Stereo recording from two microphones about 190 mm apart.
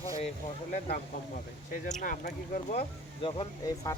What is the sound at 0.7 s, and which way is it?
Speech, 40° left (ahead or behind).